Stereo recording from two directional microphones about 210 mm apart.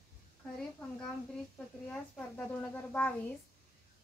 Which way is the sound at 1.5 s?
5° left (ahead or behind).